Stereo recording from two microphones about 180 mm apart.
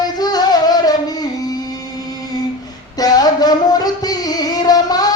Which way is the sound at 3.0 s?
20° left (ahead or behind).